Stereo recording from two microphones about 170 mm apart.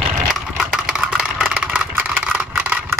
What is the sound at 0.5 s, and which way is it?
Vehicle, centre (ahead or behind).